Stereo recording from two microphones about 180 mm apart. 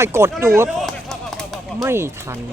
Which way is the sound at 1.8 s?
15° right (ahead or behind).